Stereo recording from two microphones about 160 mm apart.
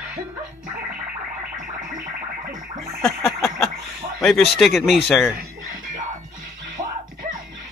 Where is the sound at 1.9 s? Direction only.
60° right (ahead or behind).